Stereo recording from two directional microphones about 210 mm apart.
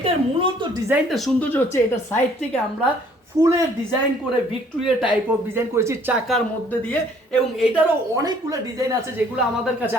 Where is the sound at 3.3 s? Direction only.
15° right (ahead or behind).